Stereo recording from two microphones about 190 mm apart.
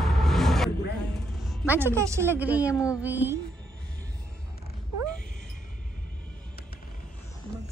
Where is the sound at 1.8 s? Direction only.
15° right (ahead or behind).